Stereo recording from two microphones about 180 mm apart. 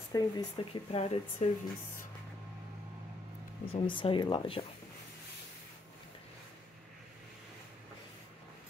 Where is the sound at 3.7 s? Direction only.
30° left (ahead or behind).